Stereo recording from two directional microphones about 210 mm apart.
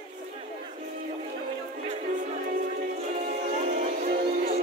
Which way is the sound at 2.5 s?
40° right (ahead or behind).